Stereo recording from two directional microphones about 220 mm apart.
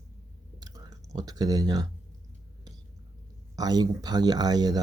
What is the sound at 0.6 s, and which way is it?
Clicking, 15° right (ahead or behind).